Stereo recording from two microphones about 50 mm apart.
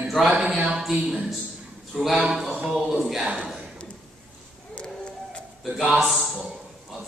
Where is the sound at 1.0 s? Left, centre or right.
Centre.